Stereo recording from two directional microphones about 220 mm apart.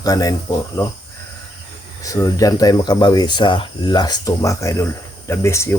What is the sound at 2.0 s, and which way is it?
Speech, 15° left (ahead or behind).